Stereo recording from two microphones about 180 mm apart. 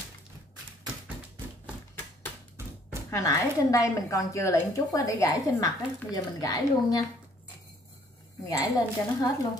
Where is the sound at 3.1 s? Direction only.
20° left (ahead or behind).